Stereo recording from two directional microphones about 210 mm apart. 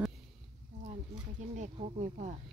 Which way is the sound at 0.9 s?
35° right (ahead or behind).